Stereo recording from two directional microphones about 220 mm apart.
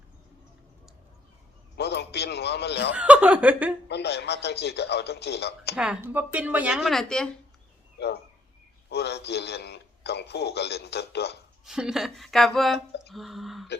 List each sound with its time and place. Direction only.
1.7 s a man's voice: 50° left (ahead or behind)
2.9 s speech: 5° right (ahead or behind)
3.8 s a man's voice: 50° left (ahead or behind)
5.7 s speech: 5° right (ahead or behind)
8.9 s a man's voice: 50° left (ahead or behind)
11.6 s speech: centre (ahead or behind)